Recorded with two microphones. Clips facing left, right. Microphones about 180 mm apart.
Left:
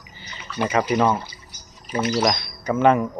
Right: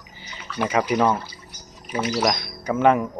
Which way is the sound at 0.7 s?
10° right (ahead or behind).